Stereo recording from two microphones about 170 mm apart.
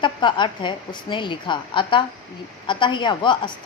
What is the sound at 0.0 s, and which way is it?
A woman's voice, 30° left (ahead or behind).